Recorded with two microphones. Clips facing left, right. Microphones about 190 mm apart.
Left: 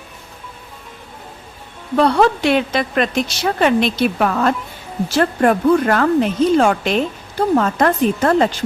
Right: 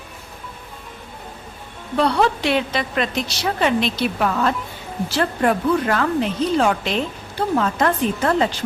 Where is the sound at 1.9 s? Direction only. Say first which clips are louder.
Left 4 dB; 50° left (ahead or behind).